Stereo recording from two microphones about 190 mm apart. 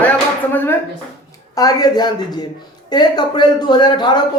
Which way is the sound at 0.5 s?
10° left (ahead or behind).